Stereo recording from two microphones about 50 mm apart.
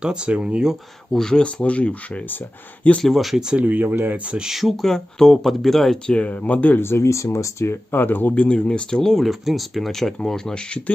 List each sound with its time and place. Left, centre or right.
0.0 s speech: centre
1.1 s speech: centre
1.4 s speech: left
3.0 s speech: centre
3.5 s speech: right
4.3 s speech: centre
6.0 s speech: left
6.8 s speech: left
7.9 s speech: left
8.5 s speech: centre
9.1 s speech: centre